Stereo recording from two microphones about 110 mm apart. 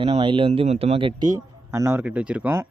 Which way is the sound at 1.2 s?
30° right (ahead or behind).